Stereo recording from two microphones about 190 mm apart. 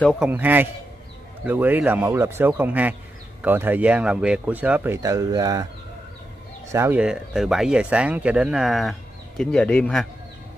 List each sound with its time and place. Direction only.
0.0 s speech: centre (ahead or behind); by 5.7 s 20° right (ahead or behind)
6.7 s speech: 10° right (ahead or behind); by 10.0 s 5° left (ahead or behind)